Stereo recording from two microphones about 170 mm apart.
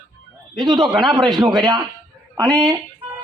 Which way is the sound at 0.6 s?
25° right (ahead or behind).